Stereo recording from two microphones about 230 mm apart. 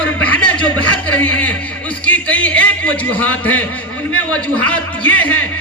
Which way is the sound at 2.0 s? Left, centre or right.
Centre.